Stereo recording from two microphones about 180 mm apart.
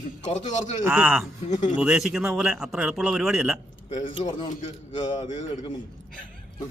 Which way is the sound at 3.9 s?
30° left (ahead or behind).